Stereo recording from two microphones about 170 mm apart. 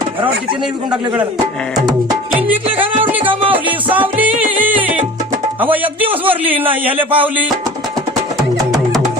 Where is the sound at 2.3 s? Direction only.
10° right (ahead or behind).